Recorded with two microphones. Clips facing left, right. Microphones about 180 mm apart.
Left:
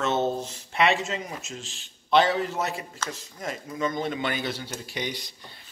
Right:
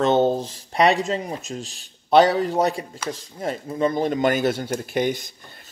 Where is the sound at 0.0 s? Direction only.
30° right (ahead or behind).